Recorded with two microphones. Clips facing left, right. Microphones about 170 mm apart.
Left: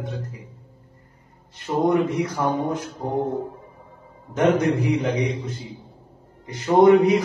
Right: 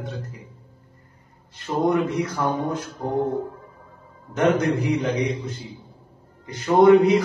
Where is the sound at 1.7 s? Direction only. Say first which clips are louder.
Left 1 dB; 10° left (ahead or behind).